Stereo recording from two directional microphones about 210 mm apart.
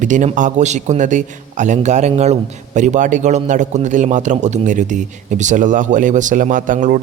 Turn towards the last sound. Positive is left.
turn(degrees=-40)  # may be behind; listen again after turning